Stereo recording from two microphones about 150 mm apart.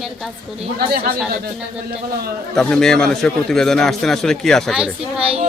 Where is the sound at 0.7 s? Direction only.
85° right.